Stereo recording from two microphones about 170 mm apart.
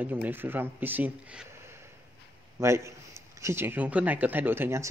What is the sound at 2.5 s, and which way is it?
A man's voice, 15° right (ahead or behind).